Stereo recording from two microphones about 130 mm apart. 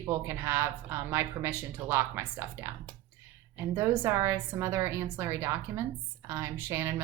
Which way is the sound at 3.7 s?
20° right (ahead or behind).